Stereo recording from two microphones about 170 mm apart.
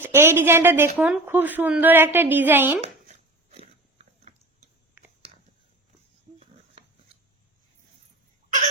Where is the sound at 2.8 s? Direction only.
40° right (ahead or behind).